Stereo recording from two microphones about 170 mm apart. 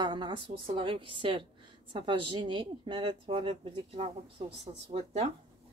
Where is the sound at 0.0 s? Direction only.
25° right (ahead or behind).